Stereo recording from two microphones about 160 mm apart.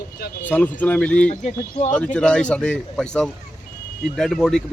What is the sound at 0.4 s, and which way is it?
A man's voice, 10° left (ahead or behind).